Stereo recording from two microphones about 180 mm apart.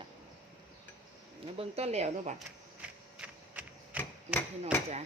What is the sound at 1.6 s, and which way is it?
Speech, 35° right (ahead or behind).